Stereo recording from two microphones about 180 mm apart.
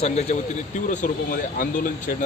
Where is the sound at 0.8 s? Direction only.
50° left (ahead or behind).